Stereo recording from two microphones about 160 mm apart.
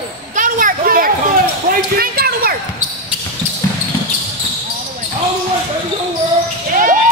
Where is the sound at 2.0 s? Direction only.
65° right (ahead or behind).